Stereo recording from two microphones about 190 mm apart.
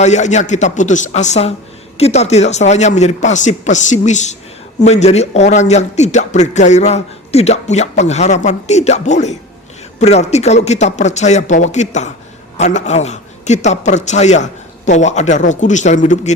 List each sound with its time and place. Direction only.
0.0 s a man's voice: 40° left (ahead or behind)